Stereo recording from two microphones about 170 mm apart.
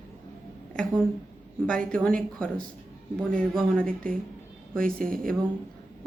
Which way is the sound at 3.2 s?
5° left (ahead or behind).